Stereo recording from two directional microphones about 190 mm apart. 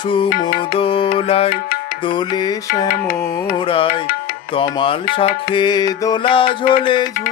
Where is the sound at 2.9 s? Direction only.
45° left (ahead or behind).